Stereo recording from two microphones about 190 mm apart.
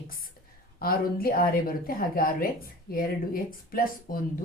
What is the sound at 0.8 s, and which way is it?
Speech, 50° left (ahead or behind).